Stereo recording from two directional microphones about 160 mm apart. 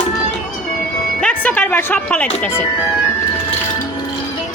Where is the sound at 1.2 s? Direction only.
10° left (ahead or behind).